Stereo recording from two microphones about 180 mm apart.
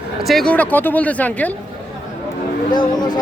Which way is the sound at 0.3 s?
5° left (ahead or behind).